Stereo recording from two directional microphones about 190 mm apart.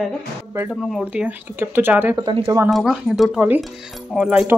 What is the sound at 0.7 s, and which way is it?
Speech, 5° right (ahead or behind).